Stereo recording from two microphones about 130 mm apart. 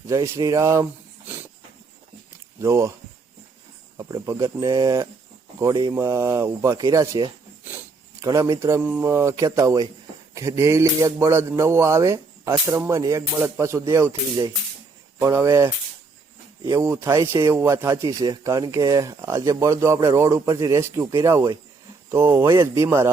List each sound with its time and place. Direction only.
0.1 s speech: 25° right (ahead or behind)
2.6 s speech: 20° right (ahead or behind)
4.1 s speech: 25° right (ahead or behind)
22.1 s speech: 20° right (ahead or behind)